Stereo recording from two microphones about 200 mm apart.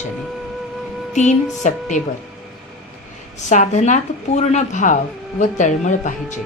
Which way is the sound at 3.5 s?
35° left (ahead or behind).